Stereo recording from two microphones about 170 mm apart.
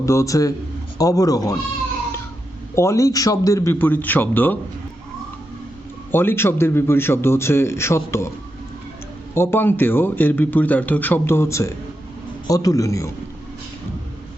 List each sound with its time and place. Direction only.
0.0 s speech: 15° left (ahead or behind)
2.7 s a man's voice: 15° left (ahead or behind)
6.1 s a man's voice: 10° left (ahead or behind)
9.3 s a man's voice: 15° left (ahead or behind)